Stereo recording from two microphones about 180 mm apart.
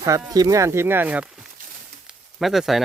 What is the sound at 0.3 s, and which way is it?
Speech, 20° right (ahead or behind).